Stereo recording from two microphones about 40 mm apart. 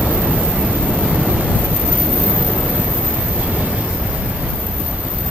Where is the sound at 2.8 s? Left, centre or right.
Right.